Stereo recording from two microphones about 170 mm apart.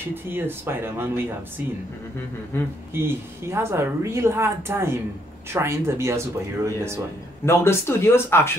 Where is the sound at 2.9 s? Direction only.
15° right (ahead or behind).